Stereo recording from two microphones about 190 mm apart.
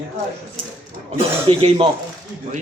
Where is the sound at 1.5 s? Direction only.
30° right (ahead or behind).